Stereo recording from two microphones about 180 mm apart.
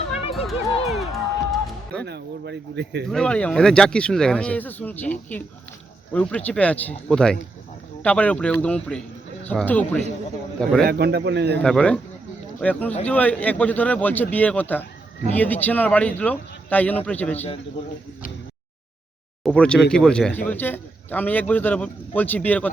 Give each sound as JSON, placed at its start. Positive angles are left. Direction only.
{"t": 0.3, "sound": "a sound", "side_deg": 0}
{"t": 1.5, "sound": "music", "side_deg": 5}
{"t": 2.0, "sound": "speech", "side_deg": -65}
{"t": 3.1, "sound": "a man's voice", "side_deg": 5}
{"t": 10.8, "sound": "a man's voice", "side_deg": -60}
{"t": 11.6, "sound": "a man's voice", "side_deg": 5}
{"t": 19.5, "sound": "a man's voice", "side_deg": 5}